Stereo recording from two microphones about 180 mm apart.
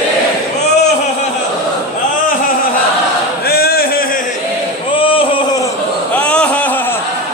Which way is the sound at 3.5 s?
60° left (ahead or behind).